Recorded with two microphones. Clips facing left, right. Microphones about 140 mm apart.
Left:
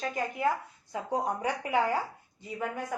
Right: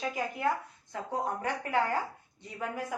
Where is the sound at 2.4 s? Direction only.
Centre (ahead or behind).